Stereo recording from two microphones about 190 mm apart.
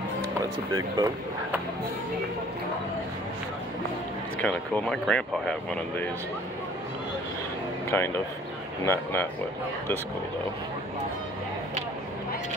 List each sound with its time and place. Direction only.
0.7 s speech: 20° right (ahead or behind)
4.4 s speech: 5° left (ahead or behind)
7.9 s speech: 15° left (ahead or behind)